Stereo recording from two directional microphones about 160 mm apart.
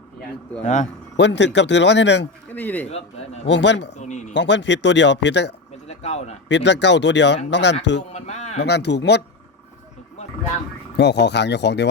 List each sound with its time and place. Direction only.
0.6 s speech: 45° left (ahead or behind)
1.1 s speech: 90° left
2.5 s speech: 10° left (ahead or behind)
2.9 s a man's voice: 40° left (ahead or behind)
3.6 s speech: 90° left
4.0 s speech: 45° left (ahead or behind)
4.4 s speech: 90° left
5.9 s speech: 45° left (ahead or behind)
6.5 s speech: 90° left
8.1 s a sound: 45° left (ahead or behind)
8.6 s speech: 90° left
10.9 s speech: 90° left